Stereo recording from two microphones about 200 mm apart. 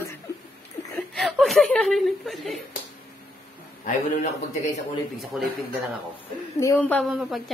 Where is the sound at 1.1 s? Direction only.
Centre (ahead or behind).